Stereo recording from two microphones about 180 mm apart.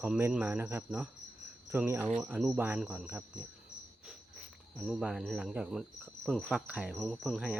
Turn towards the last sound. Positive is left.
turn(degrees=0)  # may be behind; listen again after turning